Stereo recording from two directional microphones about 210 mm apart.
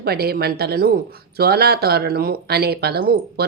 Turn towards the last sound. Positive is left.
turn(degrees=-45)  # may be behind; listen again after turning